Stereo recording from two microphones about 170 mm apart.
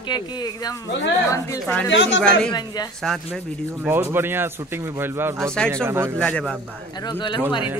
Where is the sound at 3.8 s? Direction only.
15° right (ahead or behind).